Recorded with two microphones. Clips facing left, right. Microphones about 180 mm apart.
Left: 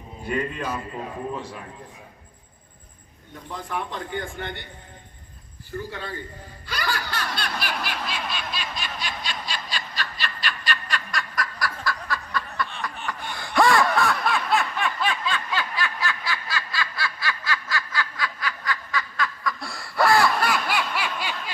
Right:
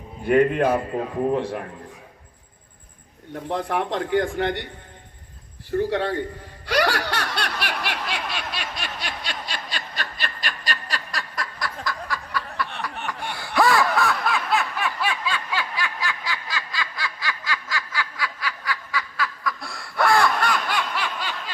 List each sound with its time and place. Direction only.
0.3 s a man's voice: 60° right (ahead or behind)
3.3 s a man's voice: 70° right (ahead or behind)
5.7 s a man's voice: 80° right
6.7 s snicker: 80° right; by 21.5 s 10° left (ahead or behind)